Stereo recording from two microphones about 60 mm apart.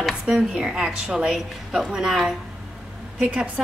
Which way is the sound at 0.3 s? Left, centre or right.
Centre.